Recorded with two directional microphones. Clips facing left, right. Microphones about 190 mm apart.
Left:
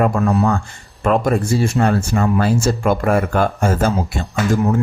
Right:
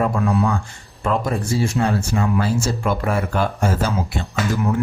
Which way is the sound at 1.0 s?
60° left (ahead or behind).